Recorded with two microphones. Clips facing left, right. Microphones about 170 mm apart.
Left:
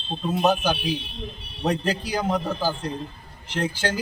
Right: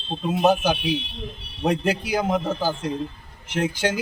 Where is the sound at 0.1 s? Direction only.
10° right (ahead or behind).